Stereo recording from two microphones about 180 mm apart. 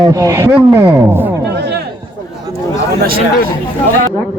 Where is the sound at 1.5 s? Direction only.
70° right (ahead or behind).